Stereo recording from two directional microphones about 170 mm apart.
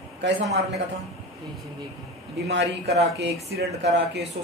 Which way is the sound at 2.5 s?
80° right.